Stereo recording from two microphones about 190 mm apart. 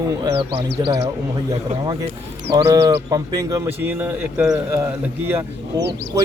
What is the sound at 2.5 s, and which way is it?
Speech, 20° right (ahead or behind).